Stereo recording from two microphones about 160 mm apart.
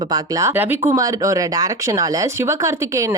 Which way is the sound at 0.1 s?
20° right (ahead or behind).